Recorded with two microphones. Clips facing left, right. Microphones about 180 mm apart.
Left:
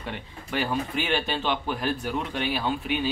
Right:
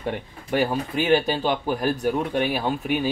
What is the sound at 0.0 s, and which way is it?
Speech, 45° right (ahead or behind).